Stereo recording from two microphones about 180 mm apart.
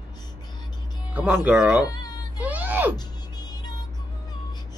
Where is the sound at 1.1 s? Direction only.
10° right (ahead or behind).